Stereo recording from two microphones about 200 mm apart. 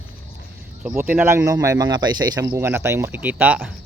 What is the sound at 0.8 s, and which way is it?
Speech, 10° right (ahead or behind).